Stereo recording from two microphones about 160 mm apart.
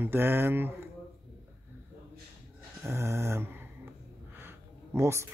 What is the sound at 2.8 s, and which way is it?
Speech, 15° right (ahead or behind).